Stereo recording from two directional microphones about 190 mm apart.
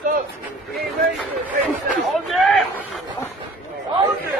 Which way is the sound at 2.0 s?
Centre (ahead or behind).